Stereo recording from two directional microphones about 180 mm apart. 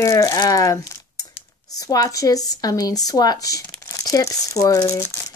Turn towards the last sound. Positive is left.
turn(degrees=15)  # may be behind; listen again after turning